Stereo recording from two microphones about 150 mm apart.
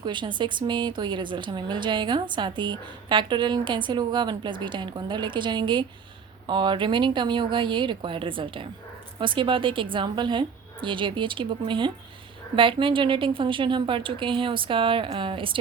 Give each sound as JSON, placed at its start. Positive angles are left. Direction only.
{"t": 0.0, "sound": "a woman's voice", "side_deg": -30}